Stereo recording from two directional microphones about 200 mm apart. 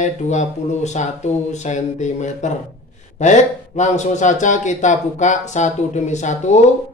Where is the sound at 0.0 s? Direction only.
35° left (ahead or behind).